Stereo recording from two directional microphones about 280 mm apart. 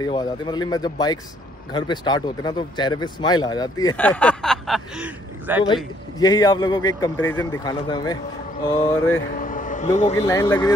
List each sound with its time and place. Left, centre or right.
0.0 s speech: centre
6.1 s speech: centre
9.3 s a sound: left
10.1 s speech: centre